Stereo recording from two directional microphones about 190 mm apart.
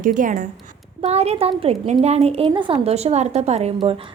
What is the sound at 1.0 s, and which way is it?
A woman's voice, 35° right (ahead or behind).